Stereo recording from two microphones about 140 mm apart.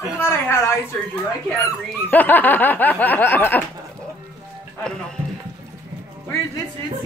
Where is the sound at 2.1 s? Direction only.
10° left (ahead or behind).